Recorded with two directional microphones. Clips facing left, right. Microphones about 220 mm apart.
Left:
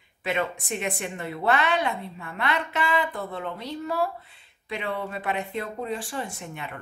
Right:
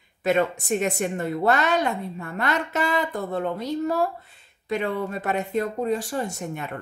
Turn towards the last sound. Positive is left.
turn(degrees=-45)  # may be behind; listen again after turning